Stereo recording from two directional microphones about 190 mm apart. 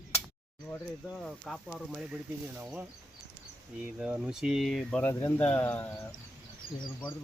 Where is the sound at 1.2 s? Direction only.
Centre (ahead or behind).